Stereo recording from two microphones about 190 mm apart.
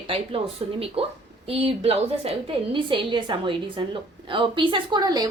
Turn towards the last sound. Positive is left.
turn(degrees=-20)  # may be behind; listen again after turning